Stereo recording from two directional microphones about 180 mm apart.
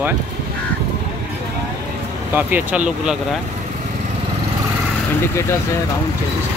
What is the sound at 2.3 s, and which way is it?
Speech, 10° right (ahead or behind).